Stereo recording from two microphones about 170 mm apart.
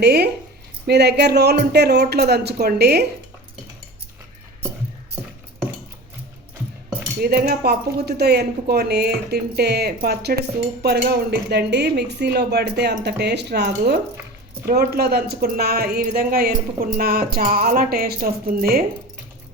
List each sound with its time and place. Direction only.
0.0 s speech: 75° right (ahead or behind)
7.2 s speech: 65° right (ahead or behind)
14.7 s speech: 65° right (ahead or behind)